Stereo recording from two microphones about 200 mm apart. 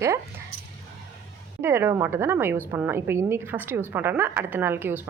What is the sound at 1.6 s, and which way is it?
A woman's voice, 10° right (ahead or behind).